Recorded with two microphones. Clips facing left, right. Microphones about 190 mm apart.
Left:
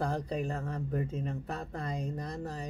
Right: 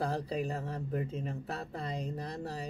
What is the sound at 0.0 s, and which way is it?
Speech, 5° right (ahead or behind).